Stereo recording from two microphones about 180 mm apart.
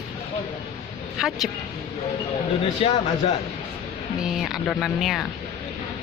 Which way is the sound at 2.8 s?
35° left (ahead or behind).